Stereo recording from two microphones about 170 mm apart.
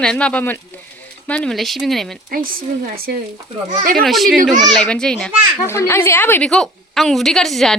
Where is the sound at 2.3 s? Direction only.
60° right (ahead or behind).